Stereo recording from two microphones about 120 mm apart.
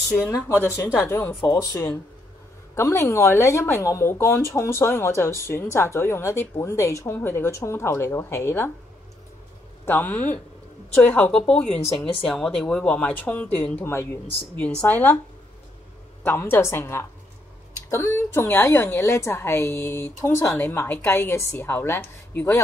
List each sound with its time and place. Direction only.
0.3 s speech: 20° left (ahead or behind)
1.5 s speech: 30° left (ahead or behind)
9.8 s speech: 15° left (ahead or behind)
11.8 s speech: 50° left (ahead or behind)
12.3 s speech: 5° left (ahead or behind)
16.3 s speech: 15° left (ahead or behind)